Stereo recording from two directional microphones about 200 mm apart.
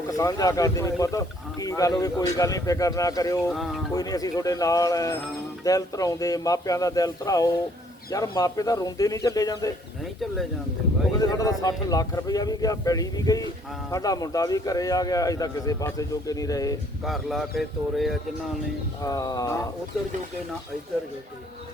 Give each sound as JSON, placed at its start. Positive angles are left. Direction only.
{"t": 0.1, "sound": "a man's voice", "side_deg": 15}
{"t": 3.5, "sound": "speech", "side_deg": 0}
{"t": 3.9, "sound": "a man's voice", "side_deg": 20}
{"t": 11.2, "sound": "a man's voice", "side_deg": 20}
{"t": 17.0, "sound": "speech", "side_deg": 0}
{"t": 19.0, "sound": "a man's voice", "side_deg": 20}